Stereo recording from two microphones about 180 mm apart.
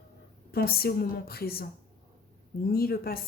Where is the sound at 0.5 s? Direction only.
55° left (ahead or behind).